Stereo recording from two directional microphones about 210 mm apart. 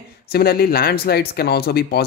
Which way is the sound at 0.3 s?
50° left (ahead or behind).